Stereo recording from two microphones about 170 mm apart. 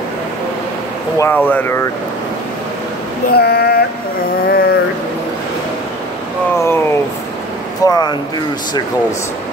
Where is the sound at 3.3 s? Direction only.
70° left (ahead or behind).